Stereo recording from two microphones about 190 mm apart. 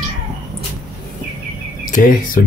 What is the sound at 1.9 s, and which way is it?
Speech, 45° left (ahead or behind).